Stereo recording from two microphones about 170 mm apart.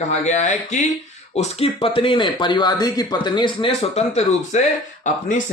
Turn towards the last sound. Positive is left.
turn(degrees=45)  # may be behind; listen again after turning